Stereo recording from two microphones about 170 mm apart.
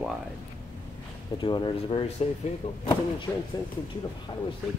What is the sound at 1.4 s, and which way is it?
Speech, 30° left (ahead or behind).